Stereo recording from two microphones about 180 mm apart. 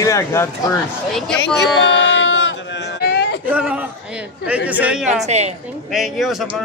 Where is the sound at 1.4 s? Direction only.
80° left.